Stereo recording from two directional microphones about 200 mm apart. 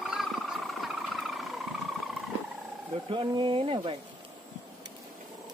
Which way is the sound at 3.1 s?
25° right (ahead or behind).